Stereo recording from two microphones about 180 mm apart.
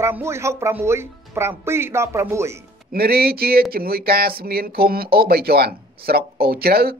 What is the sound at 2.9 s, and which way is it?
Speech, 60° right (ahead or behind).